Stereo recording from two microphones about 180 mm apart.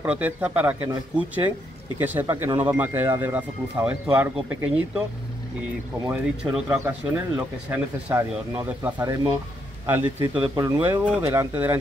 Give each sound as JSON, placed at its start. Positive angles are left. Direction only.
{"t": 0.0, "sound": "speech", "side_deg": -10}
{"t": 6.0, "sound": "speech", "side_deg": -5}